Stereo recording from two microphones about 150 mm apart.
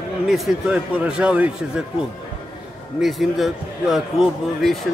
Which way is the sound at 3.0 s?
Centre (ahead or behind).